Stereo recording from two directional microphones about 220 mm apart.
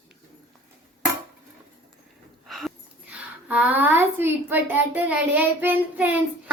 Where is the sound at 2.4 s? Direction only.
Centre (ahead or behind).